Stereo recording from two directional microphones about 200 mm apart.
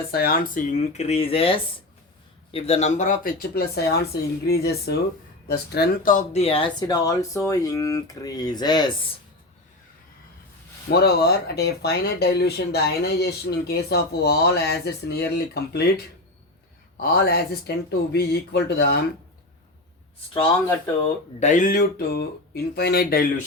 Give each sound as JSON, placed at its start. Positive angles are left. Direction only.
{"t": 0.1, "sound": "speech", "side_deg": 50}
{"t": 10.8, "sound": "speech", "side_deg": 55}
{"t": 17.0, "sound": "speech", "side_deg": 50}
{"t": 21.3, "sound": "speech", "side_deg": 35}